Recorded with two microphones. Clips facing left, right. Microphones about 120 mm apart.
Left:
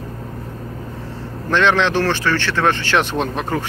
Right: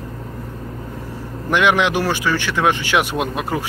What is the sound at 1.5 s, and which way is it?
Speech, 15° right (ahead or behind).